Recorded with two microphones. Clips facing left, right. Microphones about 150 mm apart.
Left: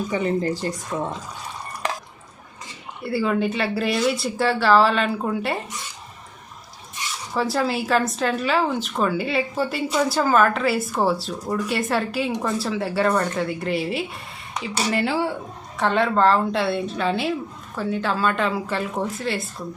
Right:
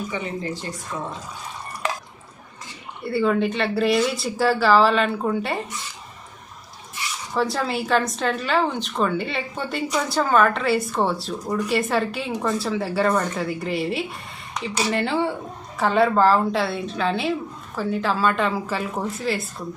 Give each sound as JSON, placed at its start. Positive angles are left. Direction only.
{"t": 0.1, "sound": "speech", "side_deg": 40}
{"t": 3.0, "sound": "speech", "side_deg": 0}
{"t": 7.3, "sound": "speech", "side_deg": 0}